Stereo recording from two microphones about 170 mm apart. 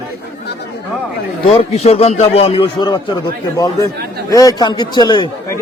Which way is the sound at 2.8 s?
25° left (ahead or behind).